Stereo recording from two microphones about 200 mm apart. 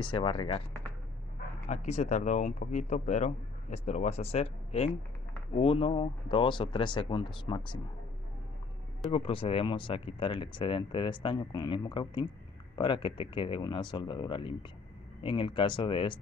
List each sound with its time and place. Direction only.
0.0 s speech: 25° left (ahead or behind)
1.7 s speech: 35° left (ahead or behind)
9.1 s speech: 25° left (ahead or behind)